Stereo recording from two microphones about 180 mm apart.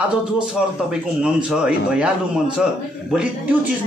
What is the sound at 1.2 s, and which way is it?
A man's voice, 5° right (ahead or behind).